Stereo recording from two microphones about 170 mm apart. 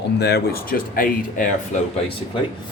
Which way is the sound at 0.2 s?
80° left.